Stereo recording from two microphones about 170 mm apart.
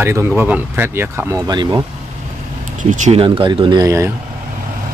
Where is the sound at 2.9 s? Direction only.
45° right (ahead or behind).